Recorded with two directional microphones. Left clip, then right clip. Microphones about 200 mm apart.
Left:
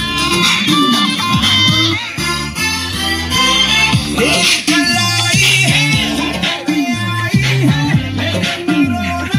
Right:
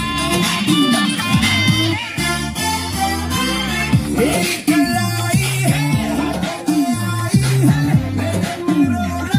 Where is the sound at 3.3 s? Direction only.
60° right (ahead or behind).